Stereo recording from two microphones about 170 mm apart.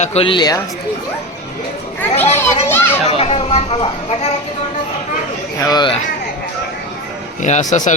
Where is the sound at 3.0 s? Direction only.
35° left (ahead or behind).